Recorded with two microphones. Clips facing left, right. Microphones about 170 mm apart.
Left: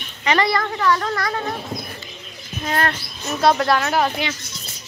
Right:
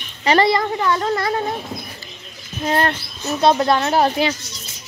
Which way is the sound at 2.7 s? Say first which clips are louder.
Right 3 dB; 25° right (ahead or behind).